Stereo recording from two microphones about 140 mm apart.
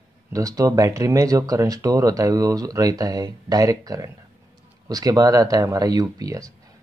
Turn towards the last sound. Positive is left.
turn(degrees=-25)  # may be behind; listen again after turning